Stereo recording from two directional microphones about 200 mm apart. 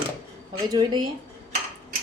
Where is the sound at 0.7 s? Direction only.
20° right (ahead or behind).